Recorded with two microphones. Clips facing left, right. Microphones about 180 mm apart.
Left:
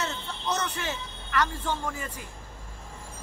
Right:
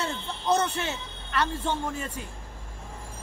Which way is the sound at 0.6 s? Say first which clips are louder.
Right 4 dB; 25° right (ahead or behind).